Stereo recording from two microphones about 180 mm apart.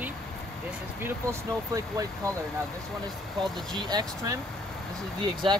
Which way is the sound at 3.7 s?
20° right (ahead or behind).